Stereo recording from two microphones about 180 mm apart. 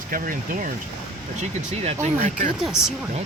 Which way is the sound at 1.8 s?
40° right (ahead or behind).